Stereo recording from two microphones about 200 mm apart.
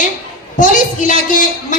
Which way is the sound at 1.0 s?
40° left (ahead or behind).